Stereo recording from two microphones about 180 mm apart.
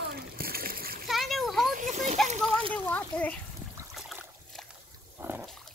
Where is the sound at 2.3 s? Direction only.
35° right (ahead or behind).